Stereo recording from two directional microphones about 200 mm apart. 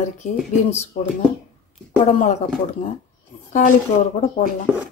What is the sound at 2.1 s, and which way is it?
Speech, 35° left (ahead or behind).